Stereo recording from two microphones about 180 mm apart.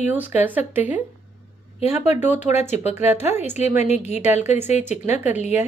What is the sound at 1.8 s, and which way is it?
Speech, 35° left (ahead or behind).